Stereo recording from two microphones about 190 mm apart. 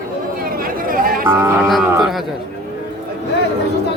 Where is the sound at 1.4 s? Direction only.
15° right (ahead or behind).